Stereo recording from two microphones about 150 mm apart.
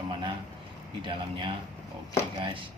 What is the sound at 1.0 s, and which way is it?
Speech, 35° right (ahead or behind).